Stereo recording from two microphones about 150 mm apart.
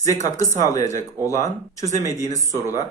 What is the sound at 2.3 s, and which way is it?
Speech, 50° right (ahead or behind).